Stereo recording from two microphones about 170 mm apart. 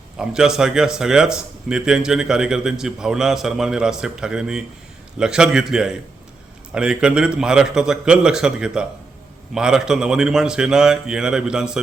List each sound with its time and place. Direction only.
0.2 s a man's voice: 5° right (ahead or behind)